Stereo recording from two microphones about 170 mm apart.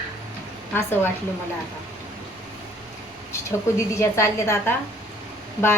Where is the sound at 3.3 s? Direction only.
15° left (ahead or behind).